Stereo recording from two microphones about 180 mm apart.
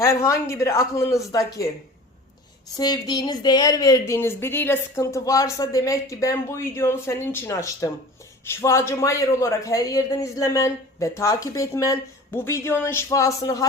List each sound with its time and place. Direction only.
0.0 s speech: 15° left (ahead or behind)
2.6 s speech: 20° left (ahead or behind)